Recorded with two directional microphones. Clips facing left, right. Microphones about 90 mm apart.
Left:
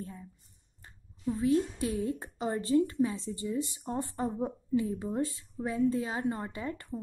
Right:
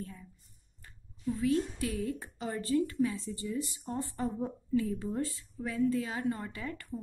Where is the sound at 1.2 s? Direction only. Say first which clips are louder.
Left 2 dB; 25° left (ahead or behind).